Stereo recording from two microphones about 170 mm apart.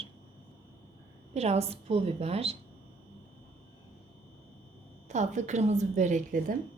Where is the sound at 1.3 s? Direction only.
40° right (ahead or behind).